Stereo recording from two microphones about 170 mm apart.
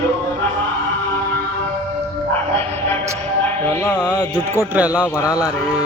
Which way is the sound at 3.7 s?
15° left (ahead or behind).